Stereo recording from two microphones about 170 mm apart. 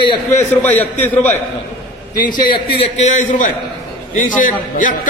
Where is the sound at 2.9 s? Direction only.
40° left (ahead or behind).